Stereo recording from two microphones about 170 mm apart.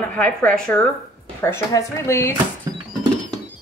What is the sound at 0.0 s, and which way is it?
Speech, 10° left (ahead or behind).